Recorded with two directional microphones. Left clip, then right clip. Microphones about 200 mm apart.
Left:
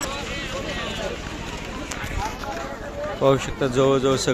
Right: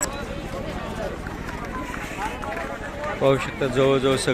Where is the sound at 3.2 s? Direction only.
10° left (ahead or behind).